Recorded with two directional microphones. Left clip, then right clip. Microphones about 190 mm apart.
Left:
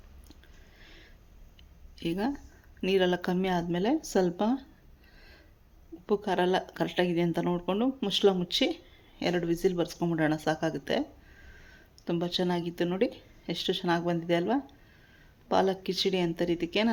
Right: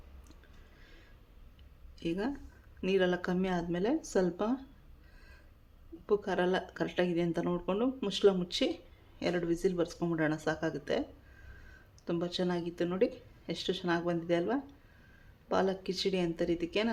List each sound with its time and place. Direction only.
0.8 s a sound: 15° left (ahead or behind)
2.0 s speech: 15° left (ahead or behind)
6.1 s speech: 20° left (ahead or behind)